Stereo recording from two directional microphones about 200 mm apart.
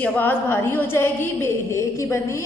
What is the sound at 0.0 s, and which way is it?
A woman's voice, 10° left (ahead or behind).